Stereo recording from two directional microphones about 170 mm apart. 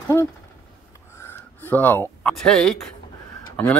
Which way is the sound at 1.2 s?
10° left (ahead or behind).